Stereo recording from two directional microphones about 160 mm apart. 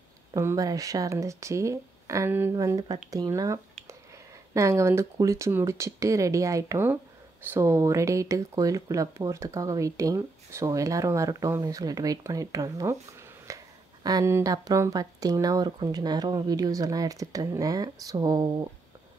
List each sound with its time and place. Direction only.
0.3 s speech: 20° right (ahead or behind)
13.5 s a sound: 20° right (ahead or behind)
14.0 s speech: 20° right (ahead or behind)